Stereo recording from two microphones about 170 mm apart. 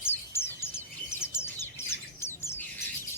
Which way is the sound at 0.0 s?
15° left (ahead or behind).